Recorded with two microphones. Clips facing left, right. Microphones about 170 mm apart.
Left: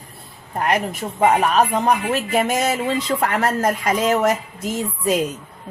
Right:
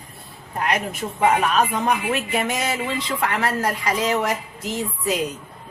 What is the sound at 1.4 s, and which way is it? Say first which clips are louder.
Speech: left 3 dB; 40° left (ahead or behind).